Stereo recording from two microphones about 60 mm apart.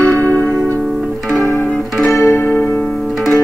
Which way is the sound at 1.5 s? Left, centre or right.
Centre.